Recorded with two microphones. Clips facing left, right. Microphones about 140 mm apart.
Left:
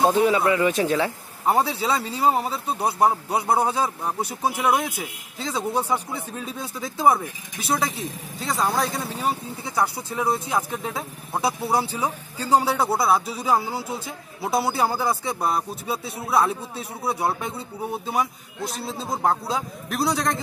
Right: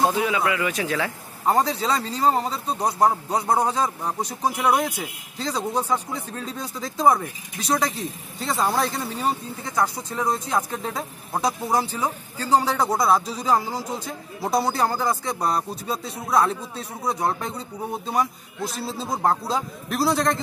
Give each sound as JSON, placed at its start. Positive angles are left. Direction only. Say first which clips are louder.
{"t": 0.0, "sound": "speech", "louder": "left 3 dB", "side_deg": 25}
{"t": 1.4, "sound": "speech", "louder": "even", "side_deg": 10}